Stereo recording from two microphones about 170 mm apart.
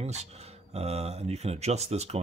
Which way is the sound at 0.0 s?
40° right (ahead or behind).